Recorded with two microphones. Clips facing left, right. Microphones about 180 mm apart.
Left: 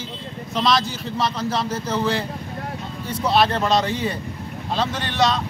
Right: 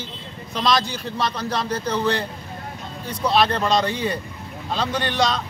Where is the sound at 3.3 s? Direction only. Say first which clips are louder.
Left 1 dB; 5° left (ahead or behind).